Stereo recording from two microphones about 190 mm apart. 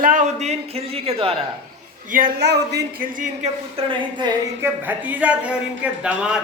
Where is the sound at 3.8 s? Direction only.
25° right (ahead or behind).